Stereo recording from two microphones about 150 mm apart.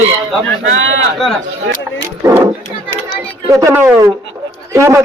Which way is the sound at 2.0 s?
20° right (ahead or behind).